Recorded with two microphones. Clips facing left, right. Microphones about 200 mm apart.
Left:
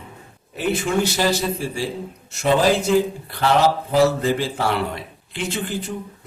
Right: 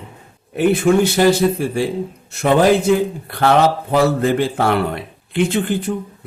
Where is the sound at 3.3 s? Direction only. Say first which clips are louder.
Right 8 dB; 55° right (ahead or behind).